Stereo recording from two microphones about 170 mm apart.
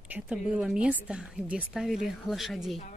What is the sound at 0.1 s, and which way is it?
Speech, 5° right (ahead or behind).